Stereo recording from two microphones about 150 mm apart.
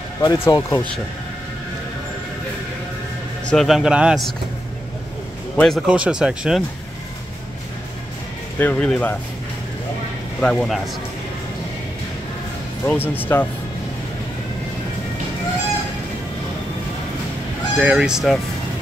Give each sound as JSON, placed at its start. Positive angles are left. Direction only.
{"t": 0.2, "sound": "speech", "side_deg": 25}
{"t": 3.4, "sound": "speech", "side_deg": 0}
{"t": 5.6, "sound": "speech", "side_deg": 0}
{"t": 8.5, "sound": "speech", "side_deg": 10}
{"t": 10.4, "sound": "speech", "side_deg": 5}
{"t": 12.8, "sound": "speech", "side_deg": 15}
{"t": 17.7, "sound": "speech", "side_deg": -10}